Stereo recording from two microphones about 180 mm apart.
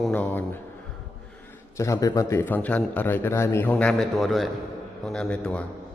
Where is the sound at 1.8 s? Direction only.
15° left (ahead or behind).